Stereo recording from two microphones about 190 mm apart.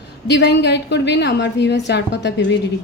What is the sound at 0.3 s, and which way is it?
A woman's voice, 65° left (ahead or behind).